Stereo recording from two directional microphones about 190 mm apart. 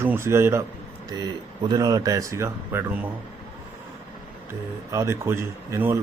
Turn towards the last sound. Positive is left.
turn(degrees=-15)  # may be behind; listen again after turning